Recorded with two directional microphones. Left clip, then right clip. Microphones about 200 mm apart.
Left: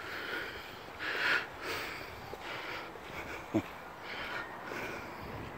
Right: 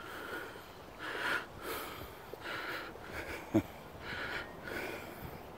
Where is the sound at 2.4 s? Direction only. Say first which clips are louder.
Right 1 dB; 25° right (ahead or behind).